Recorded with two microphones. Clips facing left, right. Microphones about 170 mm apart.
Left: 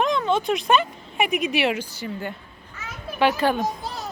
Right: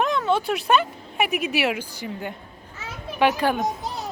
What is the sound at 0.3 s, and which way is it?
A woman's voice, 10° right (ahead or behind).